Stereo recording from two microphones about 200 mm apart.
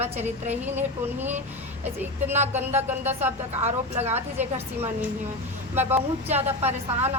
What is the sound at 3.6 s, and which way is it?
Speech, 35° right (ahead or behind).